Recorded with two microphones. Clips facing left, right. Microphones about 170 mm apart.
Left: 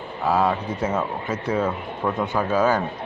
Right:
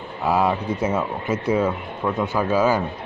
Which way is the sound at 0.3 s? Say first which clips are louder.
Right 1 dB; 10° right (ahead or behind).